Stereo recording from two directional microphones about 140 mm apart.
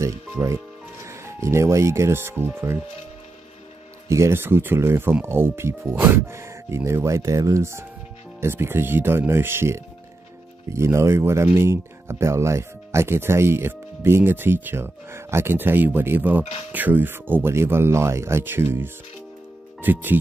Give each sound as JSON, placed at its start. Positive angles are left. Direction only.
{"t": 0.0, "sound": "speech", "side_deg": -20}
{"t": 4.1, "sound": "speech", "side_deg": -20}